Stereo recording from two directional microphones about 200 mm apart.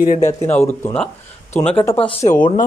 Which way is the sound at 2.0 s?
30° left (ahead or behind).